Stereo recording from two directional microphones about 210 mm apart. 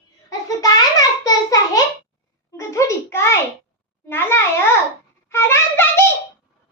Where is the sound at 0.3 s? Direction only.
15° left (ahead or behind).